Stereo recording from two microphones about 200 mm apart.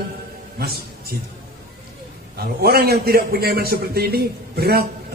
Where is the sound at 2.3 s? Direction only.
50° right (ahead or behind).